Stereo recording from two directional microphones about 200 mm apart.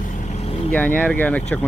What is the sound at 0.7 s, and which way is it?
Speech, 10° left (ahead or behind).